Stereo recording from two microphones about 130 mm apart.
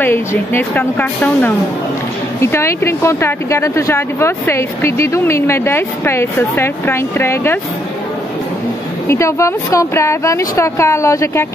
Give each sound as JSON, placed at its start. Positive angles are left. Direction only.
{"t": 0.0, "sound": "speech", "side_deg": 15}
{"t": 9.0, "sound": "speech", "side_deg": 20}